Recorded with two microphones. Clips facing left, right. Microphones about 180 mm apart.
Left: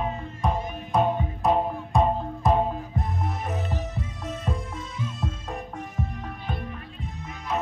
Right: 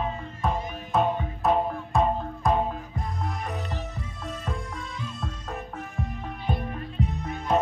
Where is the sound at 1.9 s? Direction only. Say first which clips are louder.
Left 2 dB; 15° left (ahead or behind).